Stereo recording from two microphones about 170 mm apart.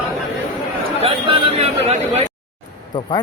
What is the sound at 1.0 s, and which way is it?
Chatter, 35° right (ahead or behind).